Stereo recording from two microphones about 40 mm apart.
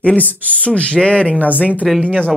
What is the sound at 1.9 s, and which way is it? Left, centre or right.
Speech, centre.